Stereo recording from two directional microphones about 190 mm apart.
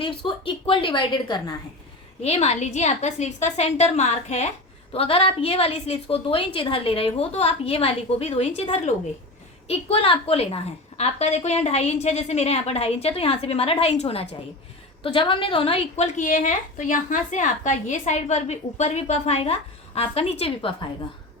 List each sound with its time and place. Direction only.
0.0 s a woman's voice: 25° left (ahead or behind)
2.2 s a woman's voice: 35° left (ahead or behind)